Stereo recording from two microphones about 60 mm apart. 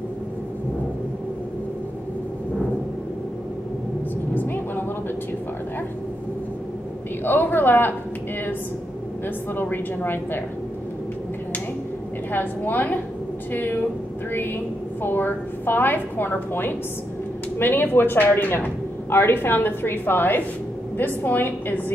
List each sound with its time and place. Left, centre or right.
4.3 s vehicle: left
7.2 s speech: left
9.5 s speech: left
12.3 s a woman's voice: left